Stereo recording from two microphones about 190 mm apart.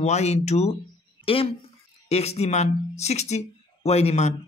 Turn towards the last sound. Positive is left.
turn(degrees=35)  # may be behind; listen again after turning